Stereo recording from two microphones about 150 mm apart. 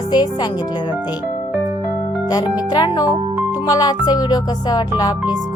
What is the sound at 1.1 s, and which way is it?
Music, 10° right (ahead or behind).